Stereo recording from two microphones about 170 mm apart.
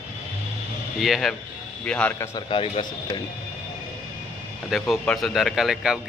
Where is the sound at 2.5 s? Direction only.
30° left (ahead or behind).